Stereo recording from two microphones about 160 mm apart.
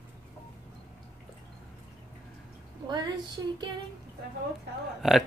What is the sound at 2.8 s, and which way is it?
Speech, 25° right (ahead or behind).